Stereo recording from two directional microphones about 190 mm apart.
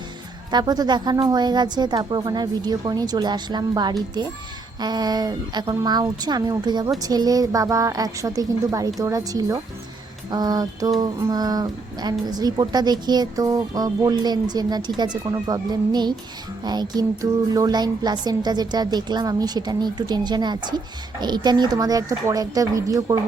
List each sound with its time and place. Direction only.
0.5 s music: 20° right (ahead or behind)